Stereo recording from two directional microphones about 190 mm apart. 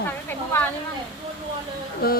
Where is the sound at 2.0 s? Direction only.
55° left (ahead or behind).